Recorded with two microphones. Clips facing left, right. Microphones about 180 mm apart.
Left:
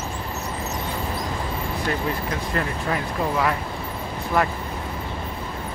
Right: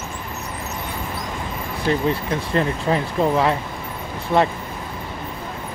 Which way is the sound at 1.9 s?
25° right (ahead or behind).